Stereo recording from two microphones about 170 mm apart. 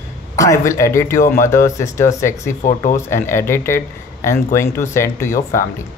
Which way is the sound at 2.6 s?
45° left (ahead or behind).